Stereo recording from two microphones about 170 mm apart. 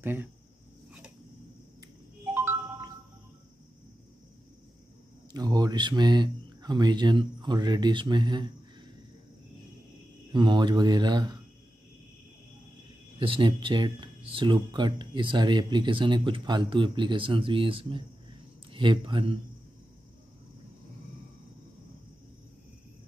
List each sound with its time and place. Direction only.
0.0 s speech: 10° right (ahead or behind)
2.3 s music: 15° right (ahead or behind)
5.3 s speech: 25° right (ahead or behind)
10.3 s speech: 25° right (ahead or behind)
13.2 s speech: 30° right (ahead or behind)